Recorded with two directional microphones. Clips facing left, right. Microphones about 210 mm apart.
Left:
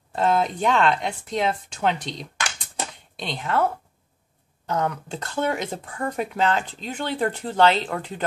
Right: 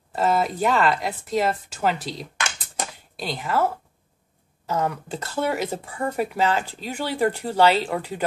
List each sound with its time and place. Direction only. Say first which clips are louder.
0.1 s speech: even; 5° right (ahead or behind)